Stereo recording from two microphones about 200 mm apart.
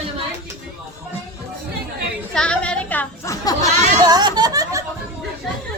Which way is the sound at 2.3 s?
5° left (ahead or behind).